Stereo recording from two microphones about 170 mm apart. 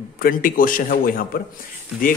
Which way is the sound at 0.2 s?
55° left (ahead or behind).